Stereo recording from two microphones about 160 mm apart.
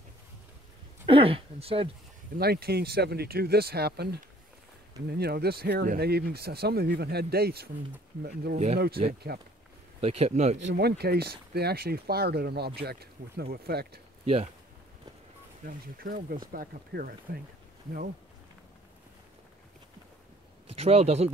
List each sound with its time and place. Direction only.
1.0 s speech: 35° right (ahead or behind)
2.3 s speech: 75° right (ahead or behind)
9.9 s speech: 40° right (ahead or behind)
10.7 s speech: 85° right
15.6 s speech: 65° right (ahead or behind)
20.7 s speech: 40° right (ahead or behind)